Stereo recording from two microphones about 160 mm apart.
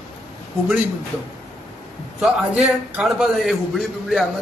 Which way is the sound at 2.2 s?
5° right (ahead or behind).